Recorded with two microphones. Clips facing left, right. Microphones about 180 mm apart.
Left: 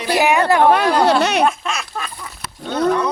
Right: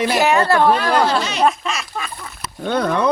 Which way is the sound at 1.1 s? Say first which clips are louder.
Left 5 dB; 65° left (ahead or behind).